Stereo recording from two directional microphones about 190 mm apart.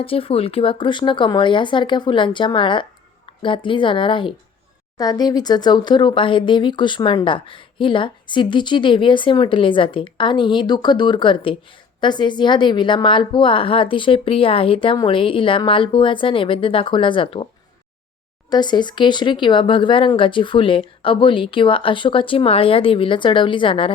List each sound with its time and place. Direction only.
0.0 s speech: 30° left (ahead or behind)
18.5 s speech: 25° left (ahead or behind)